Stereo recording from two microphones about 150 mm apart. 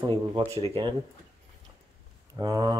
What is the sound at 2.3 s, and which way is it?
Speech, 25° right (ahead or behind).